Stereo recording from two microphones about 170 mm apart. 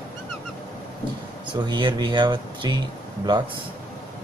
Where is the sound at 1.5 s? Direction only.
25° right (ahead or behind).